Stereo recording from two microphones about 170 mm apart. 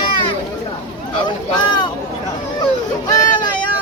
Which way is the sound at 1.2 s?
25° left (ahead or behind).